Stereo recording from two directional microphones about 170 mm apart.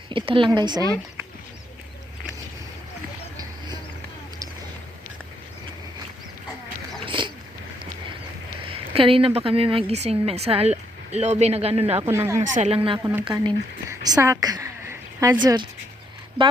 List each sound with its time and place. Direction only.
0.1 s speech: 30° right (ahead or behind)
7.0 s dog: 30° right (ahead or behind)
8.7 s speech: 35° right (ahead or behind)
12.0 s speech: 15° right (ahead or behind)
12.5 s speech: 40° right (ahead or behind)
13.0 s a woman's voice: 10° right (ahead or behind)
15.4 s speech: 25° right (ahead or behind)